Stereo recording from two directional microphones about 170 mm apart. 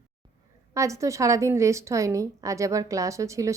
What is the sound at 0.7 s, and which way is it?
A woman's voice, 20° right (ahead or behind).